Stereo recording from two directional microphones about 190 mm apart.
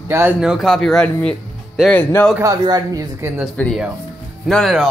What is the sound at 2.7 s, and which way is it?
Speech, 20° right (ahead or behind).